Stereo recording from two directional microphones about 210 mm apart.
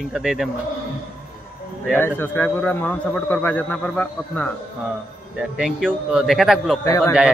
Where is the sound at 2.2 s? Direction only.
10° left (ahead or behind).